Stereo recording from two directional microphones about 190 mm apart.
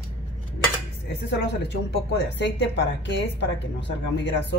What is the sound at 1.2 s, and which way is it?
A woman's voice, 70° left (ahead or behind).